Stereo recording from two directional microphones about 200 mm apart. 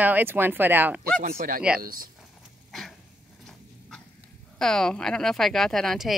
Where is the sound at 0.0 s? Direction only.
10° right (ahead or behind).